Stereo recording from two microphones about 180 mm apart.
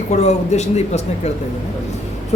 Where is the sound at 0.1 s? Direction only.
40° left (ahead or behind).